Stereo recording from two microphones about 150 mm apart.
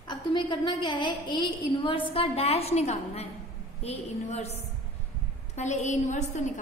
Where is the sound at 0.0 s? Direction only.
30° left (ahead or behind); by 4.6 s 45° left (ahead or behind).